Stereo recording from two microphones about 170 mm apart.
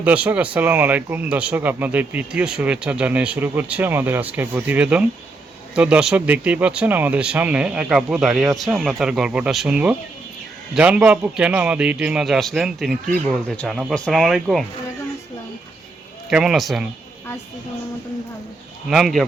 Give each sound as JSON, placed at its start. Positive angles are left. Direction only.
{"t": 0.0, "sound": "a man's voice", "side_deg": -10}
{"t": 16.3, "sound": "a man's voice", "side_deg": 0}
{"t": 18.9, "sound": "a man's voice", "side_deg": 0}